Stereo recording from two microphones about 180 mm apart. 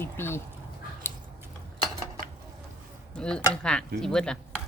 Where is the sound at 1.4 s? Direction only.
20° right (ahead or behind).